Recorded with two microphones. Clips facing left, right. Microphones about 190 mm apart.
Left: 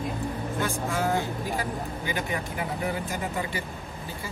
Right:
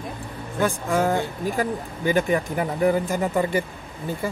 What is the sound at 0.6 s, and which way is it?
Speech, 50° right (ahead or behind).